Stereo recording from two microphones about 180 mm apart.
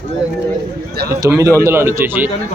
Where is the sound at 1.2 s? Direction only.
15° right (ahead or behind).